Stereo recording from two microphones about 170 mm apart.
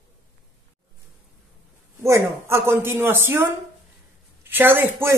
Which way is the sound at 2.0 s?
15° right (ahead or behind).